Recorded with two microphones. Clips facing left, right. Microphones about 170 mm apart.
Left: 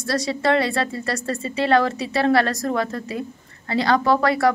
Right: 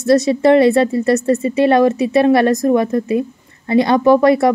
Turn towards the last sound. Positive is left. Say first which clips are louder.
# right 8 dB
turn(degrees=-20)  # may be behind; listen again after turning